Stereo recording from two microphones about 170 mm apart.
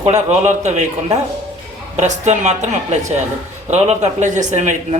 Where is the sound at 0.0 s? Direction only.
40° right (ahead or behind).